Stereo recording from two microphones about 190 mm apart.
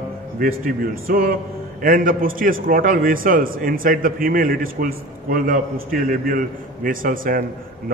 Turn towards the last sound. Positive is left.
turn(degrees=-45)  # may be behind; listen again after turning